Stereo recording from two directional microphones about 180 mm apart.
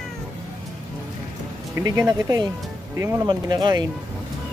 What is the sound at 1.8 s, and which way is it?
Speech, 15° right (ahead or behind).